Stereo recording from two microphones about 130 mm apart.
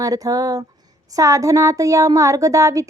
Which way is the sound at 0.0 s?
30° right (ahead or behind).